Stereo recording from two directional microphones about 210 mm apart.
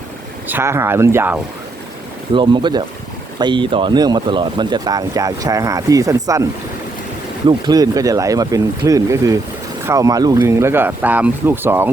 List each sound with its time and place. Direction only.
0.4 s speech: 10° right (ahead or behind)
2.3 s speech: 20° right (ahead or behind)